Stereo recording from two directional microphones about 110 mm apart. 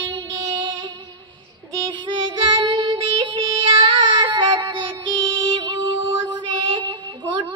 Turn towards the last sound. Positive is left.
turn(degrees=-45)  # may be behind; listen again after turning